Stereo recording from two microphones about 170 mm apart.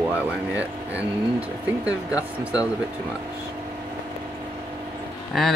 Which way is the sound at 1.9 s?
20° left (ahead or behind).